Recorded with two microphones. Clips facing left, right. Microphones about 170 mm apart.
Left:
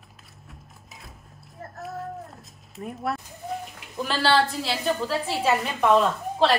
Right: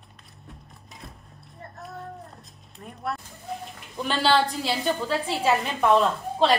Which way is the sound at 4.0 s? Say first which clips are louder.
Even; centre (ahead or behind).